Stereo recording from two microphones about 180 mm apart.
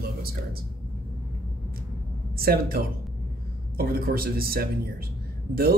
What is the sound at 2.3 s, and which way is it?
Speech, 55° right (ahead or behind).